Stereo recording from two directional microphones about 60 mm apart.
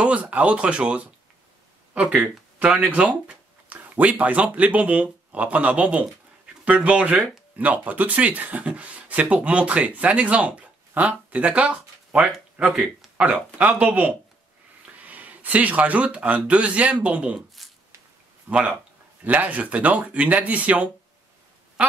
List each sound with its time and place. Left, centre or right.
0.0 s speech: right
17.6 s a sound: centre
18.5 s speech: centre